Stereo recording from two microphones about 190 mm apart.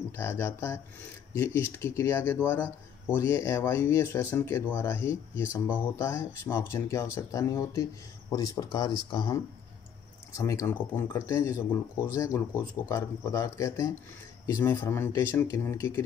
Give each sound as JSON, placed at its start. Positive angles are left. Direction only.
{"t": 0.1, "sound": "speech", "side_deg": 15}